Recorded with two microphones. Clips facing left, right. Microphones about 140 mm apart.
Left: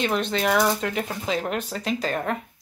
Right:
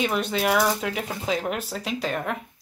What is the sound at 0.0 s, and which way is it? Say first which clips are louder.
Speech: even; 5° right (ahead or behind).